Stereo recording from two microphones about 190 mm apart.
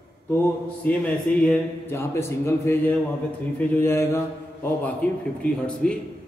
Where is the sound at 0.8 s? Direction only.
5° left (ahead or behind).